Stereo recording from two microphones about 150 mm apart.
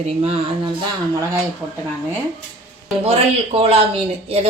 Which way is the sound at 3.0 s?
40° right (ahead or behind).